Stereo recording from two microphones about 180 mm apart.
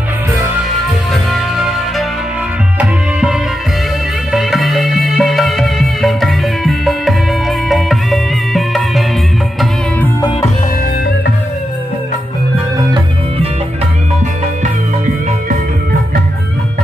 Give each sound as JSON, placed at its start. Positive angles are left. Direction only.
{"t": 1.1, "sound": "music", "side_deg": 0}